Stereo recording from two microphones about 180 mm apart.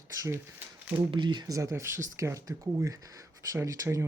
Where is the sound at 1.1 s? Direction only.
25° right (ahead or behind).